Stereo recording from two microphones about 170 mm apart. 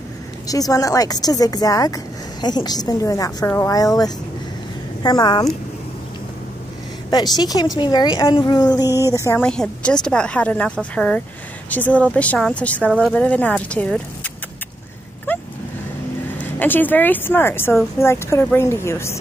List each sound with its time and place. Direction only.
0.5 s speech: 20° left (ahead or behind)
7.3 s speech: 20° left (ahead or behind)
8.9 s speech: 15° right (ahead or behind)
9.4 s a woman's voice: 5° left (ahead or behind)
16.5 s speech: 10° left (ahead or behind)